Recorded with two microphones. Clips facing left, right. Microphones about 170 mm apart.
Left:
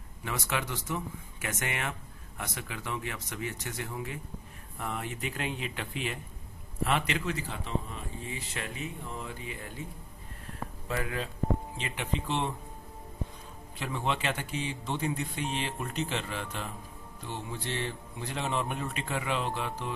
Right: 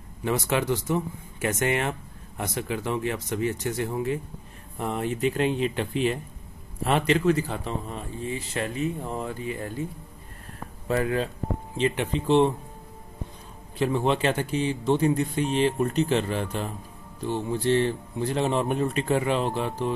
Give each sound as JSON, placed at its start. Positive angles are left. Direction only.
{"t": 0.2, "sound": "speech", "side_deg": -30}
{"t": 10.9, "sound": "speech", "side_deg": -35}
{"t": 13.7, "sound": "speech", "side_deg": -35}